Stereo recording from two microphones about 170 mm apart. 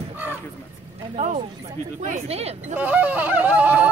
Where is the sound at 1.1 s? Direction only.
45° right (ahead or behind).